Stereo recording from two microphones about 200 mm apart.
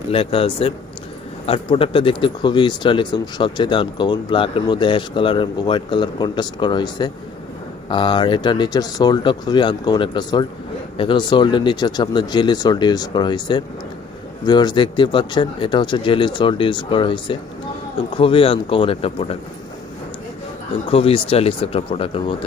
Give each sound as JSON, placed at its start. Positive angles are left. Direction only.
{"t": 0.1, "sound": "speech", "side_deg": 25}
{"t": 20.9, "sound": "speech", "side_deg": 30}